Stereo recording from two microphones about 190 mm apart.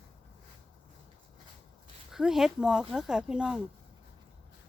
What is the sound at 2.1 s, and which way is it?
Speech, centre (ahead or behind).